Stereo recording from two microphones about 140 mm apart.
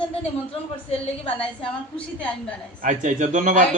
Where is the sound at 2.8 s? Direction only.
65° right (ahead or behind).